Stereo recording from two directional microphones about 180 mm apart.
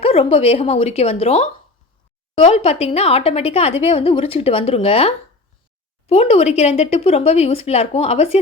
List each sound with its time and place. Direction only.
0.0 s a woman's voice: 30° left (ahead or behind)